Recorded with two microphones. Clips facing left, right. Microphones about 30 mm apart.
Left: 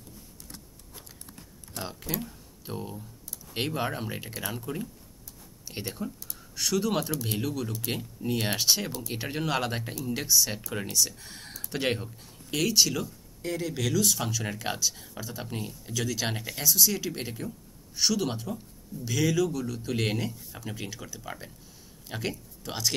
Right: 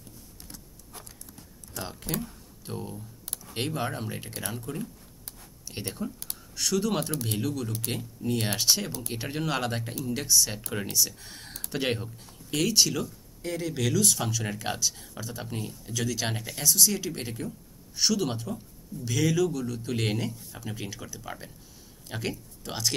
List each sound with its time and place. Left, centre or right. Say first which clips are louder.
1.8 s speech: right 1 dB; centre
6.0 s speech: right 1 dB; centre